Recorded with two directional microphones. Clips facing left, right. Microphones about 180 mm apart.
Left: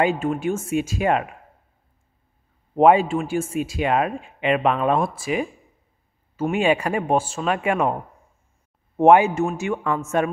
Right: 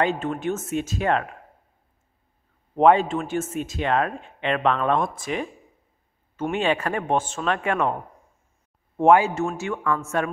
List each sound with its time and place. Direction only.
0.0 s speech: 10° left (ahead or behind)
2.7 s speech: 10° left (ahead or behind)